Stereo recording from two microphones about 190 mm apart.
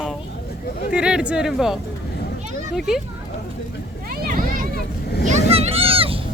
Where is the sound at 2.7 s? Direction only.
Centre (ahead or behind).